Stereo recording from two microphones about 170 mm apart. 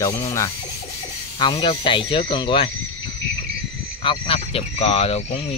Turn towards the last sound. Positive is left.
turn(degrees=35)  # may be behind; listen again after turning